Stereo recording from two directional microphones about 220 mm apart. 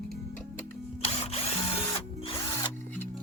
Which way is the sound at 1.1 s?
30° left (ahead or behind).